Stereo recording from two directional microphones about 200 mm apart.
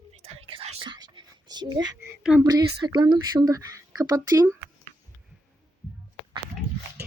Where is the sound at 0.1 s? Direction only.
30° right (ahead or behind).